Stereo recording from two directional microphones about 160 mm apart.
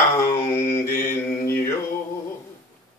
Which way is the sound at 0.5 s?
15° left (ahead or behind).